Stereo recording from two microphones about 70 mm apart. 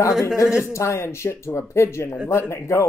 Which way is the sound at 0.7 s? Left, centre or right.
Left.